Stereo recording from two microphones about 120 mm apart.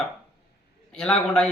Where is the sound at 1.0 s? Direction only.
5° left (ahead or behind).